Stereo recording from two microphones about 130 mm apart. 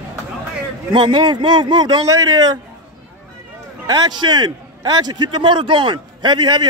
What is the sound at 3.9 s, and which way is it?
A man's voice, 35° right (ahead or behind).